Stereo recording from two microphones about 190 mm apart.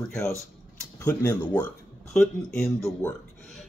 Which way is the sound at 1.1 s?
10° left (ahead or behind).